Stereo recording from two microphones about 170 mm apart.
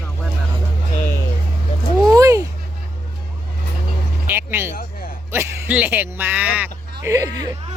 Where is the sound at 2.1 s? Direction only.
20° right (ahead or behind).